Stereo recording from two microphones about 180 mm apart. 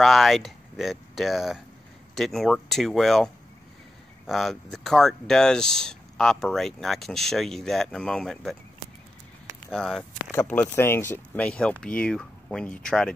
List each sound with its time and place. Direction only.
0.0 s speech: centre (ahead or behind)
4.3 s speech: centre (ahead or behind)
9.7 s speech: centre (ahead or behind)